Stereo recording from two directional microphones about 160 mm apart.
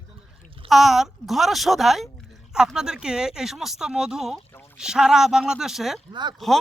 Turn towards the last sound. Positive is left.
turn(degrees=0)  # may be behind; listen again after turning